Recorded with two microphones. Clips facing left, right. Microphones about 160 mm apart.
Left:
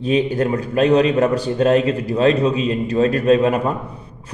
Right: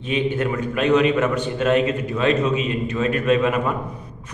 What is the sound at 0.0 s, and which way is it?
A man's voice, 35° left (ahead or behind).